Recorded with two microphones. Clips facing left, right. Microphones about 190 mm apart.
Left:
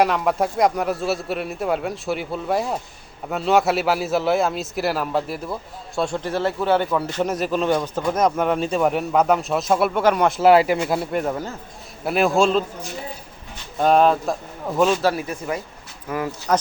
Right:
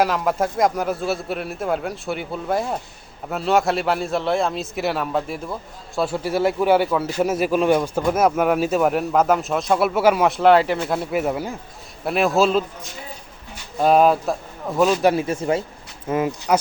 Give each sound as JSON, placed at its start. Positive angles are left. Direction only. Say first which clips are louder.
{"t": 0.0, "sound": "speech", "louder": "left 1 dB", "side_deg": 0}
{"t": 13.7, "sound": "speech", "louder": "right 1 dB", "side_deg": -5}
{"t": 15.0, "sound": "speech", "louder": "right 4 dB", "side_deg": -25}